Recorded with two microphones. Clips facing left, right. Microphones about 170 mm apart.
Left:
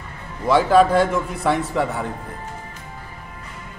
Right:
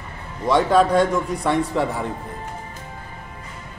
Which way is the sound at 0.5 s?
5° left (ahead or behind).